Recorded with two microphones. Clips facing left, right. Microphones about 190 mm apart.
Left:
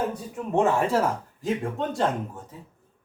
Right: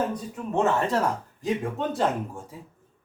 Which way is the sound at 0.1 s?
10° left (ahead or behind).